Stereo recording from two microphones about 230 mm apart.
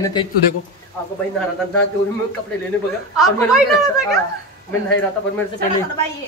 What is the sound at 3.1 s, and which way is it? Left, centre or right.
Speech, centre.